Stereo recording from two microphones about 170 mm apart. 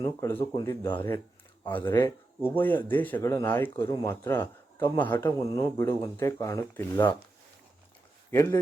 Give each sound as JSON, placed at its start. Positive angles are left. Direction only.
{"t": 0.0, "sound": "speech", "side_deg": 15}
{"t": 8.3, "sound": "speech", "side_deg": 15}